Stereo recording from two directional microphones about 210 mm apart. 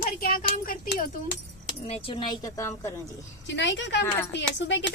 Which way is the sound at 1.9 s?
30° left (ahead or behind).